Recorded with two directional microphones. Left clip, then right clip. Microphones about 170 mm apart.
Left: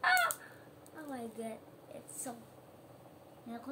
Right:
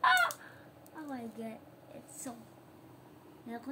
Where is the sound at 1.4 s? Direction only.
10° left (ahead or behind).